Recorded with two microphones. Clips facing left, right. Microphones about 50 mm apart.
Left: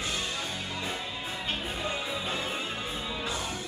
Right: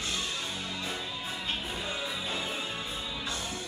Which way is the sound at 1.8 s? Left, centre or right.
Centre.